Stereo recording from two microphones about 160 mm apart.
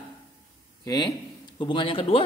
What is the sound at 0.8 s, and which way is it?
A man's voice, 25° left (ahead or behind).